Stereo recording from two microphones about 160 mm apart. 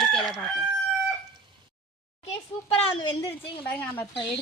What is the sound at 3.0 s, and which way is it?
Speech, 30° left (ahead or behind).